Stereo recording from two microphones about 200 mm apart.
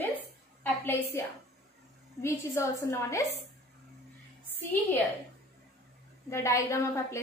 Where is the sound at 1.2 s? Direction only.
15° left (ahead or behind).